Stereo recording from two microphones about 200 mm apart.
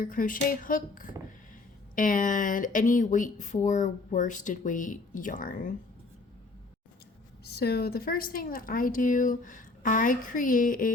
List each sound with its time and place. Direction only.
0.0 s a woman's voice: 45° left (ahead or behind)
7.4 s a woman's voice: 55° left (ahead or behind)